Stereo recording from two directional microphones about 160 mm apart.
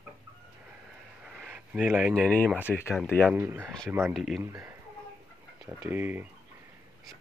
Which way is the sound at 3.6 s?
5° left (ahead or behind).